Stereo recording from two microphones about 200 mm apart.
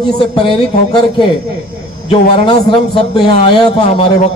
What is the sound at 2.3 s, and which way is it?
A man's voice, 25° left (ahead or behind).